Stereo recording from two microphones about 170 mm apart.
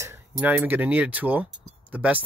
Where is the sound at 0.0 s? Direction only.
15° right (ahead or behind).